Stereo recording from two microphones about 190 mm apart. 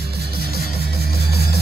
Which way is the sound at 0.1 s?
55° right (ahead or behind).